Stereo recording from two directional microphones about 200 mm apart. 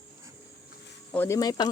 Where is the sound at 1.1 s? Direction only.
10° left (ahead or behind).